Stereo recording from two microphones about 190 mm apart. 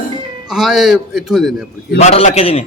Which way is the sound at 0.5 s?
Centre (ahead or behind).